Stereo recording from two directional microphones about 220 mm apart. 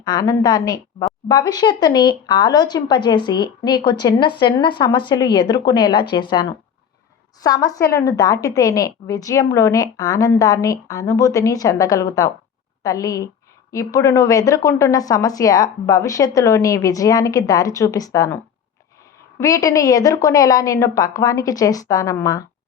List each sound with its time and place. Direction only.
0.0 s a woman's voice: 15° left (ahead or behind)
19.4 s a woman's voice: 15° left (ahead or behind)